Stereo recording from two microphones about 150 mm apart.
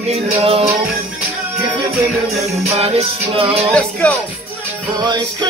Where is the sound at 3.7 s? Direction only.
5° left (ahead or behind).